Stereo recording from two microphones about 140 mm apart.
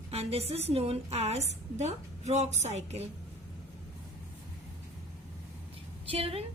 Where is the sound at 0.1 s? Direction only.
45° right (ahead or behind).